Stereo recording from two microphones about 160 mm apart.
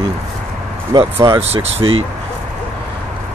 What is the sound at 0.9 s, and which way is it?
Speech, 25° right (ahead or behind).